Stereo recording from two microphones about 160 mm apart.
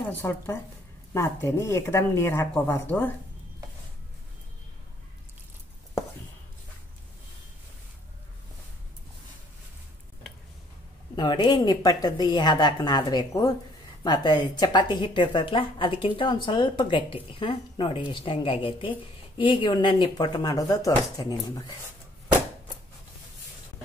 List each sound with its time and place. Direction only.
0.1 s speech: 15° left (ahead or behind)
11.1 s a woman's voice: 25° left (ahead or behind)